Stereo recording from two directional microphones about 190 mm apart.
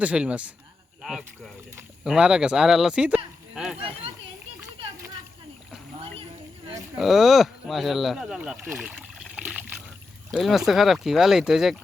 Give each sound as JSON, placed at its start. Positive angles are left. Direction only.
{"t": 0.0, "sound": "speech", "side_deg": -5}
{"t": 2.0, "sound": "speech", "side_deg": -5}
{"t": 3.5, "sound": "a sound", "side_deg": -5}
{"t": 3.8, "sound": "speech", "side_deg": -30}
{"t": 6.9, "sound": "speech", "side_deg": 0}